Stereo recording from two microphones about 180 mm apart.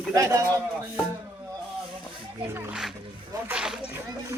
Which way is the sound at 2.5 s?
10° right (ahead or behind).